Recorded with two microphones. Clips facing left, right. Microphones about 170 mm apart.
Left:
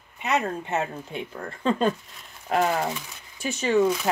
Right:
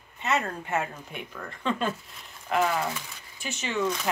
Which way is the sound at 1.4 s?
35° left (ahead or behind).